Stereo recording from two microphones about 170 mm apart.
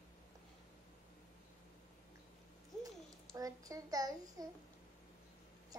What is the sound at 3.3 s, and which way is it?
A child's voice, 20° right (ahead or behind).